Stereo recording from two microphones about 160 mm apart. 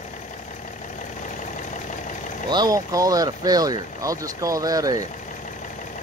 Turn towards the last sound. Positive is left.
turn(degrees=-20)  # may be behind; listen again after turning